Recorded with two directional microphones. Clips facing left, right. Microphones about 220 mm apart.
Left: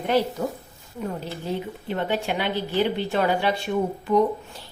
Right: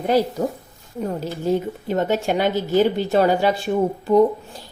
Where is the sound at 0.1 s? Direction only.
40° right (ahead or behind).